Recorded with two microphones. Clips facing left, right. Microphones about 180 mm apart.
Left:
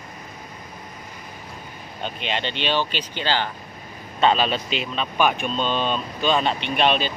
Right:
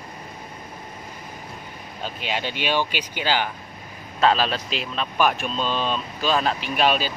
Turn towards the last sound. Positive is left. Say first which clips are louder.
# left 1 dB
turn(degrees=-5)  # may be behind; listen again after turning